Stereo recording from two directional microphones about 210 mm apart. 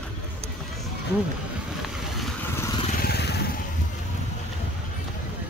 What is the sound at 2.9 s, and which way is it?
Vehicle, 45° left (ahead or behind).